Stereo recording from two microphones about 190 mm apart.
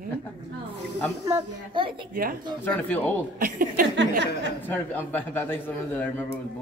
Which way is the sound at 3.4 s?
50° right (ahead or behind).